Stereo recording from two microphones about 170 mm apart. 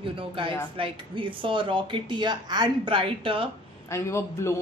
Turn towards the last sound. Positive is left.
turn(degrees=15)  # may be behind; listen again after turning